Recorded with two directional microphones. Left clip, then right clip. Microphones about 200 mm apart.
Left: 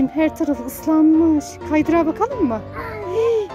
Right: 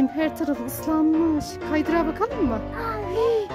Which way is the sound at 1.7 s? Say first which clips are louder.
Left 6 dB; 5° left (ahead or behind).